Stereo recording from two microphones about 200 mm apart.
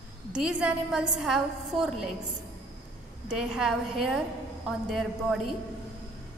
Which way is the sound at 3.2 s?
5° right (ahead or behind).